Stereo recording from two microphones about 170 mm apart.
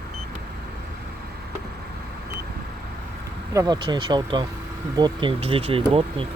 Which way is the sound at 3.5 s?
25° right (ahead or behind).